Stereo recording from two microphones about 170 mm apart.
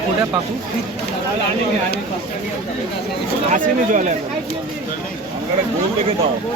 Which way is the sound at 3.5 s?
50° right (ahead or behind).